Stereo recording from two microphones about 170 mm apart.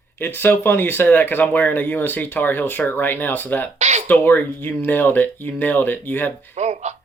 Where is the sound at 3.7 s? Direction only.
40° right (ahead or behind).